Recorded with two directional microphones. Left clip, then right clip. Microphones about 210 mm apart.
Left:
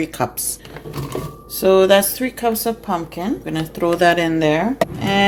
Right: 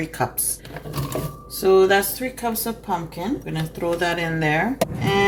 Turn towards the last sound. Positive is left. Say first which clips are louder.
# left 3 dB
turn(degrees=55)  # may be behind; listen again after turning